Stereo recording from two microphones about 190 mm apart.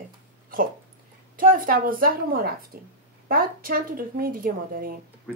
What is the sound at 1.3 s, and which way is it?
A woman's voice, 45° right (ahead or behind).